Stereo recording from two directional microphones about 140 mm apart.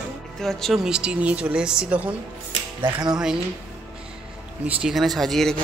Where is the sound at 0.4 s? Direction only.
Centre (ahead or behind).